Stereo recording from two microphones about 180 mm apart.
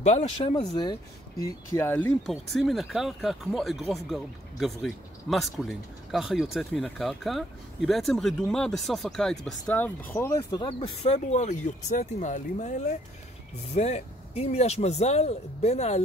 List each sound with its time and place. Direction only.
0.0 s speech: 35° left (ahead or behind)
10.7 s speech: 35° left (ahead or behind)